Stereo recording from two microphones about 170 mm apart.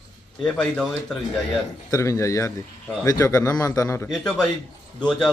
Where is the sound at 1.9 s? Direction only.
15° left (ahead or behind).